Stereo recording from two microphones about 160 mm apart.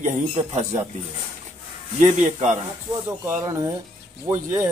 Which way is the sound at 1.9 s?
50° right (ahead or behind).